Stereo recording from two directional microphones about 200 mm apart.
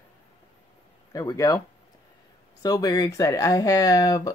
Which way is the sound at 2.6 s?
20° left (ahead or behind).